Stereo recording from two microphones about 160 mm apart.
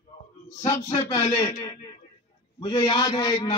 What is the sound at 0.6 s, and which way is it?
A man's voice, 20° left (ahead or behind).